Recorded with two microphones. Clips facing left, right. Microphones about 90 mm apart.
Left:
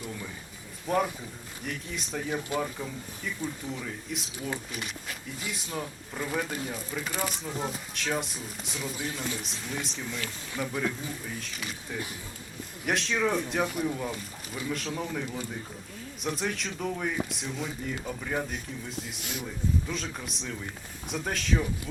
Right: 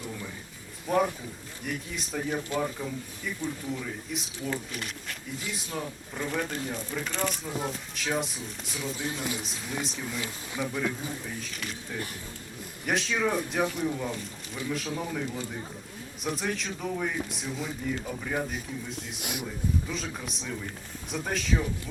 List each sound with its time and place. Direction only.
0.9 s speech: centre (ahead or behind)
3.4 s speech: centre (ahead or behind)
10.2 s speech: 15° right (ahead or behind)
10.7 s speech: centre (ahead or behind)
19.2 s speech: 15° right (ahead or behind)
19.9 s speech: centre (ahead or behind)